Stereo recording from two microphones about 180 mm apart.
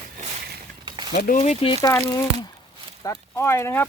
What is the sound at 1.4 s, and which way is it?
Speech, 35° left (ahead or behind).